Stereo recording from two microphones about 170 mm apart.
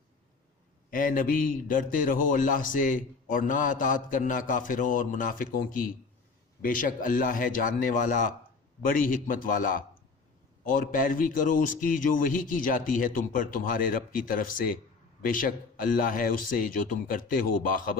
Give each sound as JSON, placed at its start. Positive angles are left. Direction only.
{"t": 0.9, "sound": "a man's voice", "side_deg": 55}